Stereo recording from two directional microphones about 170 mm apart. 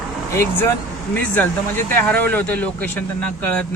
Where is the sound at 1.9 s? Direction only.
10° left (ahead or behind).